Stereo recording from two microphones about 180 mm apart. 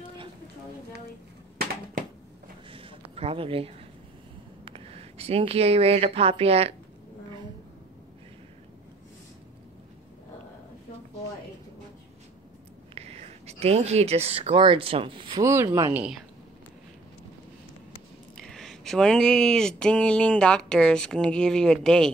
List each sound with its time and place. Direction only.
2.7 s a sound: 30° right (ahead or behind)
4.6 s speech: 35° right (ahead or behind)
12.9 s speech: 35° right (ahead or behind); by 16.2 s 10° right (ahead or behind)
18.3 s speech: 5° left (ahead or behind)